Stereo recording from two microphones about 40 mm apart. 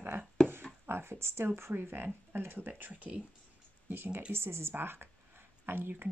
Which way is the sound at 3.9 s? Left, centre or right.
Right.